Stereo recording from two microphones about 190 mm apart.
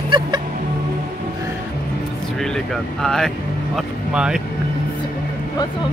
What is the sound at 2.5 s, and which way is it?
Speech, centre (ahead or behind).